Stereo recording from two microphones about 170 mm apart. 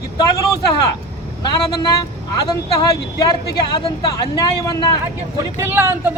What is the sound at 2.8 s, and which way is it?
Speech, 25° left (ahead or behind).